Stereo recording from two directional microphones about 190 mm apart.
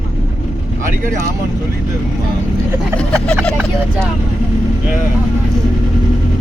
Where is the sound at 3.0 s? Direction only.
5° left (ahead or behind).